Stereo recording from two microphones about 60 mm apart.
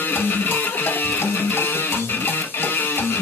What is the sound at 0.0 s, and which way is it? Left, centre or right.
Music, left.